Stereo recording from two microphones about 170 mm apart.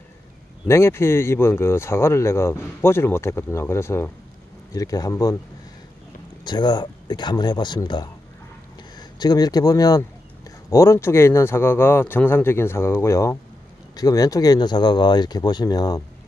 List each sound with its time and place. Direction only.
0.7 s speech: 15° left (ahead or behind)
6.4 s speech: 25° left (ahead or behind)
9.2 s speech: 25° left (ahead or behind)